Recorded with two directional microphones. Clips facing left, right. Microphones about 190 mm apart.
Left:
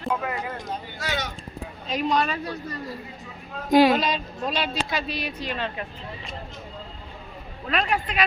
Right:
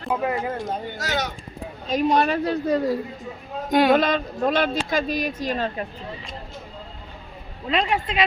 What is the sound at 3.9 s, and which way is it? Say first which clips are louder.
Speech: right 5 dB; 55° right (ahead or behind).